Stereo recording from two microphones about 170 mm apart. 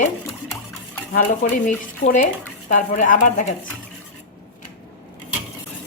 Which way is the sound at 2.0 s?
40° left (ahead or behind).